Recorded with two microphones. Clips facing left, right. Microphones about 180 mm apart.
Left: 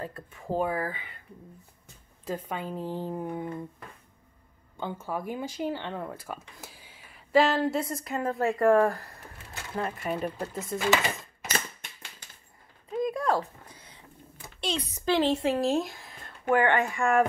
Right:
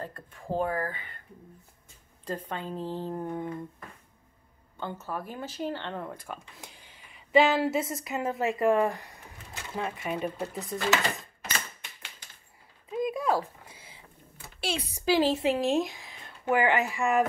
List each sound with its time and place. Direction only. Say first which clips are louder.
0.0 s a woman's voice: left 2 dB; 10° left (ahead or behind)
2.2 s a woman's voice: left 1 dB; 10° left (ahead or behind)
4.7 s speech: left 2 dB; 10° left (ahead or behind)
11.4 s typewriter: left 3 dB; 40° left (ahead or behind)
12.9 s a sound: left 1 dB; centre (ahead or behind)
14.6 s speech: left 1 dB; 10° right (ahead or behind)